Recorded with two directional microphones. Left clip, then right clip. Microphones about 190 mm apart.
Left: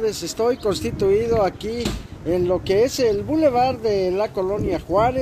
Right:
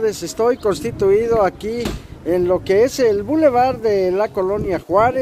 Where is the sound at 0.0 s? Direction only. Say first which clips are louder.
Right 4 dB; 20° right (ahead or behind).